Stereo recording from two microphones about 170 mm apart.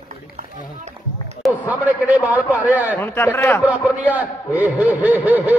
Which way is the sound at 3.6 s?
10° right (ahead or behind).